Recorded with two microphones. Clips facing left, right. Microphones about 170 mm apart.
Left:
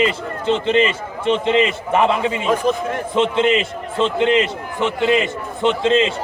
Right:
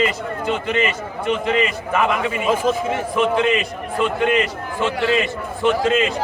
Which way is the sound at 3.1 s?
25° left (ahead or behind).